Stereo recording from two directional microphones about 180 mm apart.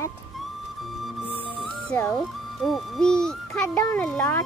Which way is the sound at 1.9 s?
10° left (ahead or behind).